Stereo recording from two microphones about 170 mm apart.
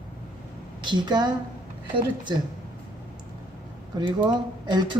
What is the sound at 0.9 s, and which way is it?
Speech, 25° right (ahead or behind).